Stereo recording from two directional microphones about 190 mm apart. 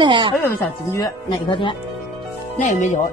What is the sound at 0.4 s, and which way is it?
Speech, 15° left (ahead or behind).